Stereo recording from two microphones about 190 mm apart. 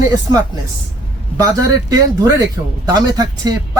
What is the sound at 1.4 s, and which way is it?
Speech, 20° right (ahead or behind).